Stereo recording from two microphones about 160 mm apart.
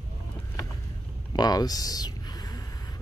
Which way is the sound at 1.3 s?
25° left (ahead or behind).